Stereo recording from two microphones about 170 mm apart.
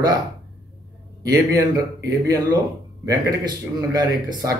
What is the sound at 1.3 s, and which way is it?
Speech, 20° right (ahead or behind).